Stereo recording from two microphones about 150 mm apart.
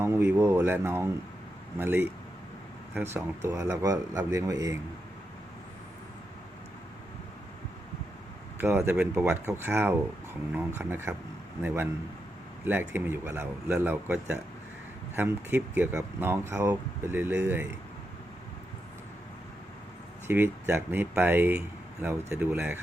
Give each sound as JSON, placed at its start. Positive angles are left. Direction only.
{"t": 0.0, "sound": "a sound", "side_deg": -15}
{"t": 1.8, "sound": "speech", "side_deg": -15}
{"t": 8.5, "sound": "speech", "side_deg": -15}
{"t": 12.9, "sound": "speech", "side_deg": -15}
{"t": 20.2, "sound": "speech", "side_deg": -15}